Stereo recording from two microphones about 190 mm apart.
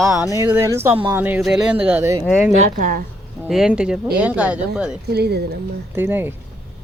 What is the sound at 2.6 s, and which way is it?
Speech, 45° right (ahead or behind).